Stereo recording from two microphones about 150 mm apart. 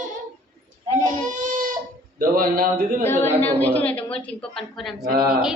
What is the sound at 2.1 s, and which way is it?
Speech, 75° right (ahead or behind).